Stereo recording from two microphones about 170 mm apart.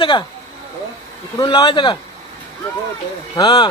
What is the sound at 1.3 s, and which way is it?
Speech, 25° left (ahead or behind).